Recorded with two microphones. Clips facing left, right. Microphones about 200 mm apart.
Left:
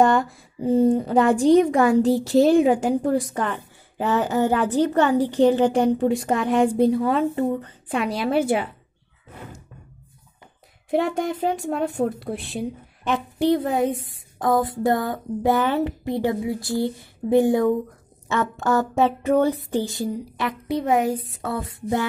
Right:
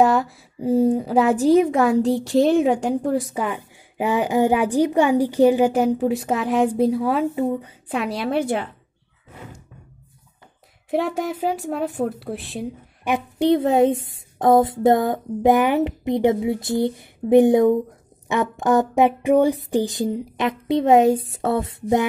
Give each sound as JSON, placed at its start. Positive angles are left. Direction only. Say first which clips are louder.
{"t": 0.0, "sound": "a woman's voice", "louder": "right 1 dB", "side_deg": 0}
{"t": 10.9, "sound": "a woman's voice", "louder": "even", "side_deg": 0}
{"t": 13.0, "sound": "a woman's voice", "louder": "right 1 dB", "side_deg": -15}